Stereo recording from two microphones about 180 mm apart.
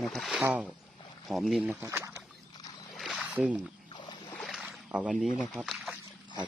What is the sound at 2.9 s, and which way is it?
Rowboat, centre (ahead or behind).